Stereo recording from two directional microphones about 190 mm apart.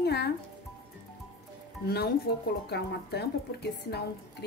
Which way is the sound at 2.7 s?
60° left (ahead or behind).